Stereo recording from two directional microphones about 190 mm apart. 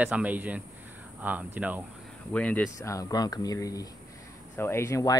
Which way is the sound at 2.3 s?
5° left (ahead or behind).